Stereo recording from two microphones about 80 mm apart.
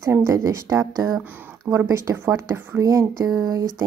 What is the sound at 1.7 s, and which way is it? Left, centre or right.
Speech, right.